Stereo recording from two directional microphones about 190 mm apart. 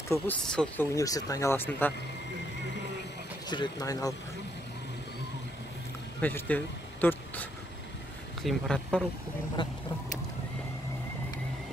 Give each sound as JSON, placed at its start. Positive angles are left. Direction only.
{"t": 0.1, "sound": "speech", "side_deg": 5}
{"t": 0.9, "sound": "speech", "side_deg": 20}
{"t": 3.4, "sound": "speech", "side_deg": 20}
{"t": 6.2, "sound": "speech", "side_deg": 10}
{"t": 9.6, "sound": "speech", "side_deg": 25}